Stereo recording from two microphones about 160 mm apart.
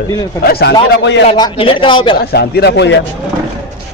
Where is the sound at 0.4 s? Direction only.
75° left (ahead or behind).